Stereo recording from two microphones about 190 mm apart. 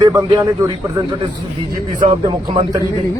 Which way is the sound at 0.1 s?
15° right (ahead or behind).